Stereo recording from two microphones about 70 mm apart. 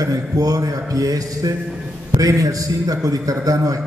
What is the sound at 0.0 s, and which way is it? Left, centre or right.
A man's voice, right.